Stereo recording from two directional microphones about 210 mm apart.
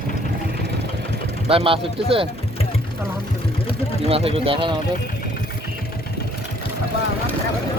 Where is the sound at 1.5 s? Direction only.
25° right (ahead or behind).